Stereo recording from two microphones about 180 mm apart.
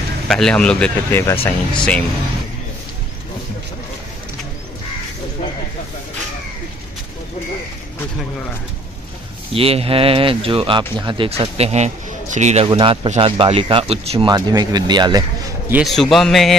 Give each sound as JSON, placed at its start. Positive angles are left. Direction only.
{"t": 0.3, "sound": "speech", "side_deg": 5}
{"t": 9.5, "sound": "speech", "side_deg": -30}
{"t": 12.6, "sound": "speech", "side_deg": -30}
{"t": 15.7, "sound": "speech", "side_deg": 0}